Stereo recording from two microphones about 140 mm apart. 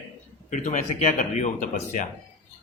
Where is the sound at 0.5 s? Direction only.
60° left (ahead or behind).